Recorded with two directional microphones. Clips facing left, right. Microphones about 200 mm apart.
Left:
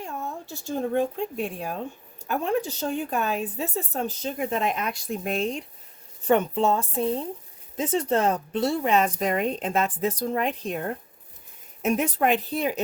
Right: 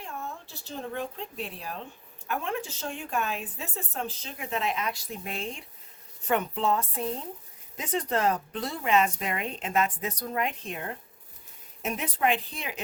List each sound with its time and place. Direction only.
0.0 s a woman's voice: 45° left (ahead or behind)
6.2 s a woman's voice: 30° left (ahead or behind)